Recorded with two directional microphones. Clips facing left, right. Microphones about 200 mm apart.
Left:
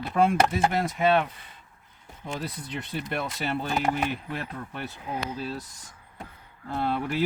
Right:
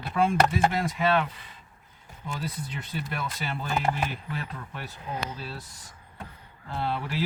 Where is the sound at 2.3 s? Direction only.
60° left (ahead or behind).